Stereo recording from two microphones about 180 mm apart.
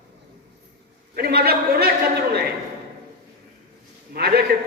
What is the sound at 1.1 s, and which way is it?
Speech, 60° right (ahead or behind).